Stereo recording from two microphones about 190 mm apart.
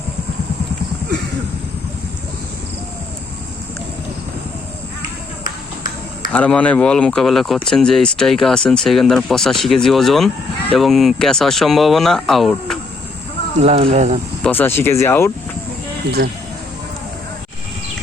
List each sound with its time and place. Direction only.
6.3 s speech: 5° left (ahead or behind)
13.6 s speech: 35° right (ahead or behind)
14.4 s speech: 10° left (ahead or behind)
16.1 s speech: 60° right (ahead or behind)